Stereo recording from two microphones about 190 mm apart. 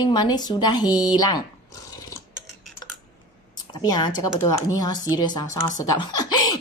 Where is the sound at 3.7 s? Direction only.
20° left (ahead or behind).